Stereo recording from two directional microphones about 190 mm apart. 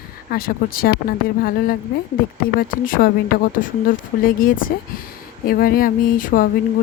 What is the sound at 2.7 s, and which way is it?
Speech, 45° left (ahead or behind).